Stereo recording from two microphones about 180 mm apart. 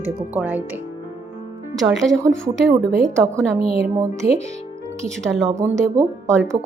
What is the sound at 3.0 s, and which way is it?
Speech, 15° right (ahead or behind).